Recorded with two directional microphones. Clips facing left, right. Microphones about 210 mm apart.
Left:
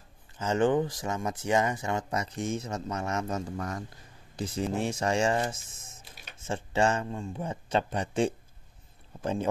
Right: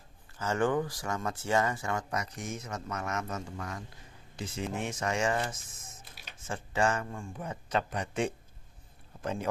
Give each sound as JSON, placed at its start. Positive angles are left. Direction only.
{"t": 0.4, "sound": "speech", "side_deg": 20}